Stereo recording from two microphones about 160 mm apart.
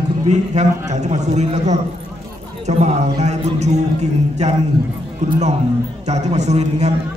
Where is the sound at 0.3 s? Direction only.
45° right (ahead or behind).